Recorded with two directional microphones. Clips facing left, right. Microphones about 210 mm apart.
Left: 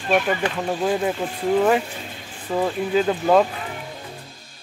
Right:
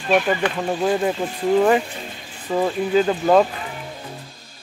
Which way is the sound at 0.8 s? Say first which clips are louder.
Right 2 dB; centre (ahead or behind).